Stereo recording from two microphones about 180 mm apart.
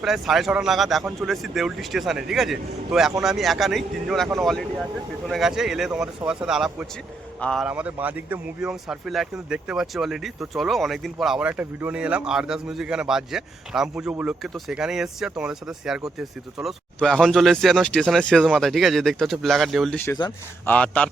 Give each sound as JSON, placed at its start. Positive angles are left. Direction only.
{"t": 0.0, "sound": "speech", "side_deg": 0}
{"t": 5.3, "sound": "speech", "side_deg": -5}
{"t": 7.7, "sound": "speech", "side_deg": -5}
{"t": 20.1, "sound": "a man's voice", "side_deg": 25}
{"t": 20.7, "sound": "a man's voice", "side_deg": 10}